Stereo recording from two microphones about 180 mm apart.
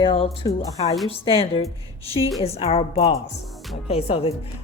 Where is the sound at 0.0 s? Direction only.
30° left (ahead or behind).